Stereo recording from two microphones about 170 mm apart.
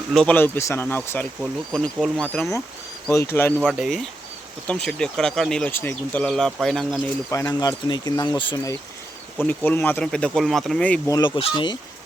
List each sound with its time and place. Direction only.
0.1 s speech: 5° left (ahead or behind)
1.4 s speech: centre (ahead or behind)
3.6 s speech: centre (ahead or behind)
7.3 s speech: 20° left (ahead or behind)
9.4 s speech: 10° left (ahead or behind)
11.1 s speech: 25° left (ahead or behind)